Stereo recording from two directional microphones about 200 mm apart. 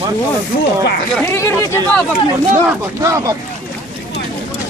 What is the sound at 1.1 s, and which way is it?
Speech, 10° left (ahead or behind).